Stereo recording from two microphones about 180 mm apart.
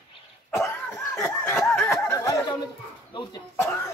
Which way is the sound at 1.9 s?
15° left (ahead or behind).